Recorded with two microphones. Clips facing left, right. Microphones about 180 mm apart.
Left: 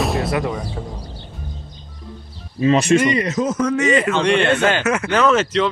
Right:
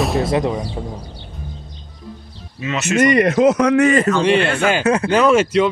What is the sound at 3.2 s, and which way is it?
Speech, 70° right (ahead or behind).